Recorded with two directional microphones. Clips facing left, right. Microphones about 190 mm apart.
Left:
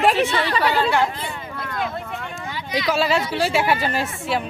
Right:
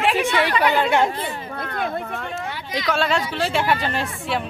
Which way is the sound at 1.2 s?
50° right (ahead or behind).